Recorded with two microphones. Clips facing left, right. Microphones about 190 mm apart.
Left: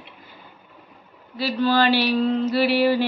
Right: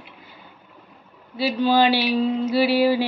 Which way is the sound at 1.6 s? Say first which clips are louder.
Even; 15° right (ahead or behind).